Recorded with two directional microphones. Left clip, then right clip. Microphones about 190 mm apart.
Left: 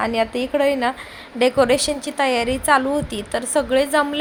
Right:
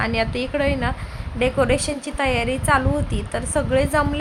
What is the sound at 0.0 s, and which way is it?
A woman's voice, 20° left (ahead or behind).